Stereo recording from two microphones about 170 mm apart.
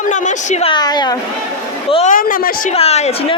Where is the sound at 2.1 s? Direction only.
55° left (ahead or behind).